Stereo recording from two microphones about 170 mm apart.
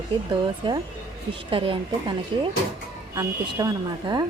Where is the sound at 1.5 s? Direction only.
30° right (ahead or behind).